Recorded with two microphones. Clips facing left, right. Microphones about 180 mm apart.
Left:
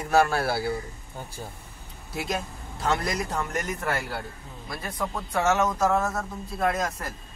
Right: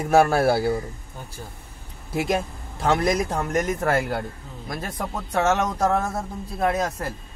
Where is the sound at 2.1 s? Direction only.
55° right (ahead or behind).